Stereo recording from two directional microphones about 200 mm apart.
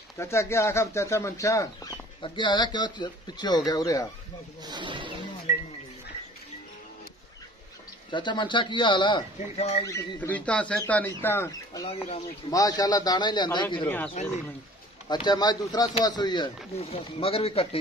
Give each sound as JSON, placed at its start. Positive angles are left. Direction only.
{"t": 0.2, "sound": "speech", "side_deg": 15}
{"t": 4.6, "sound": "speech", "side_deg": -25}
{"t": 8.1, "sound": "speech", "side_deg": 25}
{"t": 9.8, "sound": "speech", "side_deg": 10}
{"t": 13.8, "sound": "speech", "side_deg": 10}
{"t": 15.0, "sound": "speech", "side_deg": 20}